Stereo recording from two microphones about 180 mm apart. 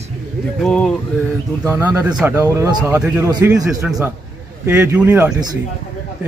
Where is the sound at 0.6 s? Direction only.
5° left (ahead or behind).